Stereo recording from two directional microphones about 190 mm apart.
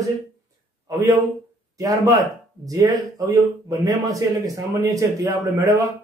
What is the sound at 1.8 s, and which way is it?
Speech, 20° right (ahead or behind).